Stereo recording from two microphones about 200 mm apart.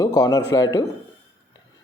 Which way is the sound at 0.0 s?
15° left (ahead or behind).